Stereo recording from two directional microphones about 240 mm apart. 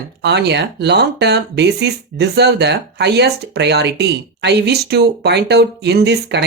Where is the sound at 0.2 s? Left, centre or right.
Right.